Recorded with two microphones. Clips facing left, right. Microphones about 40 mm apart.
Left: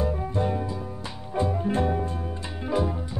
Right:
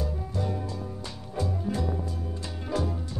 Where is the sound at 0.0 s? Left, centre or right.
Left.